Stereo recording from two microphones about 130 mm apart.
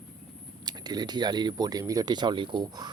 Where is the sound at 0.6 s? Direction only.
35° right (ahead or behind).